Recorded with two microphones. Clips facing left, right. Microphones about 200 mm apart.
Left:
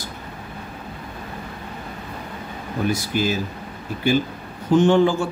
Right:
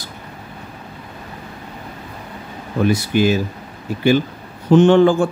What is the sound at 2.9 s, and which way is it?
Speech, 65° right (ahead or behind).